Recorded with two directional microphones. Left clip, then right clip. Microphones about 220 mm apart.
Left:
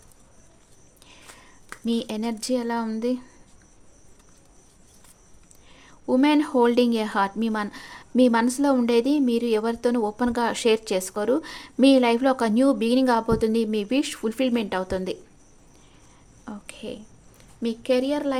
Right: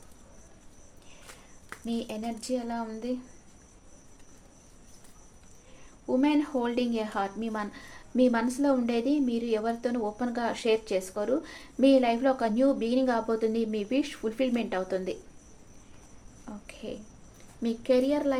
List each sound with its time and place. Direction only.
1.8 s speech: 45° left (ahead or behind)
6.1 s speech: 45° left (ahead or behind)
16.5 s a sound: 30° left (ahead or behind)
17.6 s speech: 25° left (ahead or behind)